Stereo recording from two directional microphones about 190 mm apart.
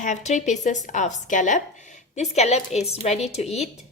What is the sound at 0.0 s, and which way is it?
A woman's voice, 40° left (ahead or behind).